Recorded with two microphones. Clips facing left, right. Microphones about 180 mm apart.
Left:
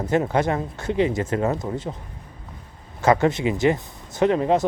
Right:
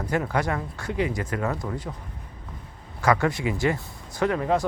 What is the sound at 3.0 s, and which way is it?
Speech, 25° left (ahead or behind).